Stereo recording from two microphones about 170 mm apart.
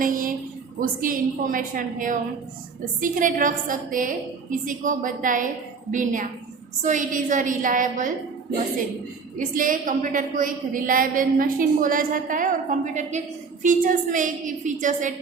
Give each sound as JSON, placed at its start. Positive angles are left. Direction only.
{"t": 0.0, "sound": "a sound", "side_deg": -55}
{"t": 0.8, "sound": "a woman's voice", "side_deg": -55}
{"t": 9.4, "sound": "a woman's voice", "side_deg": -55}